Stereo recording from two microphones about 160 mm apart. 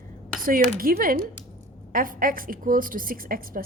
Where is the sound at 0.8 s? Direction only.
65° right (ahead or behind).